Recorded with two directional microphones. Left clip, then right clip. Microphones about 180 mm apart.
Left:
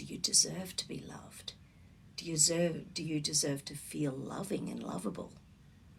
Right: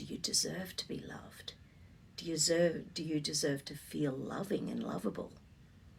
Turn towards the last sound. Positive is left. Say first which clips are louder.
# right 1 dB
turn(degrees=10)  # may be behind; listen again after turning